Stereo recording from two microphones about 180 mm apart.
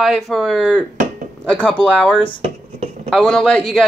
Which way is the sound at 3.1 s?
5° left (ahead or behind).